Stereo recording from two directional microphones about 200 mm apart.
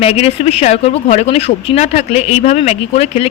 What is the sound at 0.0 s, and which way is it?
Speech, 30° left (ahead or behind).